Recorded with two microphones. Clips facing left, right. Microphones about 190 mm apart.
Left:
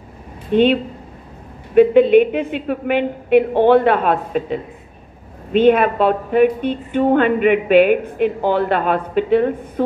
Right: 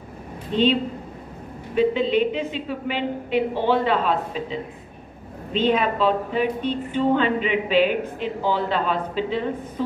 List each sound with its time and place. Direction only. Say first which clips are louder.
0.5 s speech: left 6 dB; 55° left (ahead or behind)
1.8 s a woman's voice: left 9 dB; 60° left (ahead or behind)